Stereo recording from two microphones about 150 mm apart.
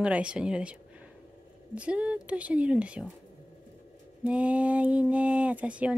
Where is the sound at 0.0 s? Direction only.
5° right (ahead or behind).